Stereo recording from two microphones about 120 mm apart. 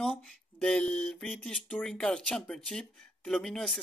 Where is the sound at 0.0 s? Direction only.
5° left (ahead or behind).